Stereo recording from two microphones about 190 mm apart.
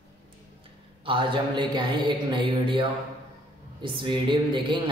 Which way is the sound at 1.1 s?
25° right (ahead or behind).